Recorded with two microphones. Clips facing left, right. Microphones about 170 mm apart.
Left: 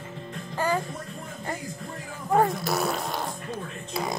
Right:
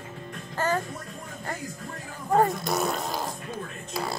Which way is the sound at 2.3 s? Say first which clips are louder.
Even; centre (ahead or behind).